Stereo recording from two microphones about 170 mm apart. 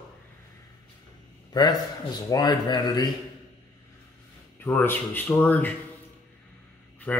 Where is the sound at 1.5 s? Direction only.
25° left (ahead or behind).